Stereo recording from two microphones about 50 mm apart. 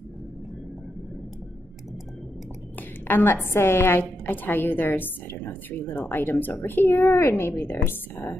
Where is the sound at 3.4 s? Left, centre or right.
Left.